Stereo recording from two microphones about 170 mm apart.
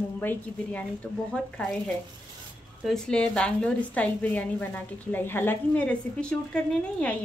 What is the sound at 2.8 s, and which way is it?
A woman's voice, 5° left (ahead or behind).